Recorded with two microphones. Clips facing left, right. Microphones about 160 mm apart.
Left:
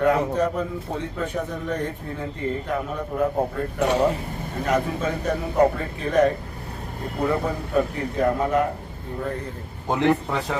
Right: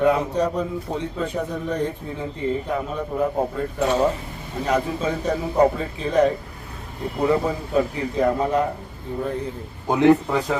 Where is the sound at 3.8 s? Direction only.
15° left (ahead or behind).